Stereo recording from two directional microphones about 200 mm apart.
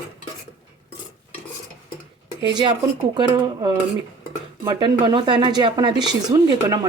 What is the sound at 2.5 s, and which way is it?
Speech, 25° right (ahead or behind).